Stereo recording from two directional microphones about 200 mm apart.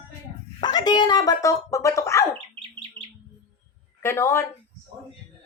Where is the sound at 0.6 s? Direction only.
20° left (ahead or behind).